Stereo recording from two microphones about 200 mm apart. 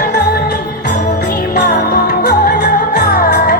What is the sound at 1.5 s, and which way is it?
Music, 50° left (ahead or behind).